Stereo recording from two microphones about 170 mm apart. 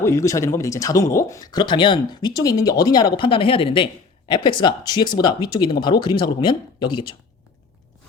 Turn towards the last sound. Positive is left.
turn(degrees=30)  # may be behind; listen again after turning